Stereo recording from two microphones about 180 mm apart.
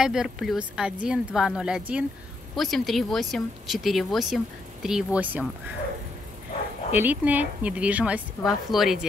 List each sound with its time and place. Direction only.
0.0 s speech: 5° right (ahead or behind)
6.9 s speech: 10° right (ahead or behind)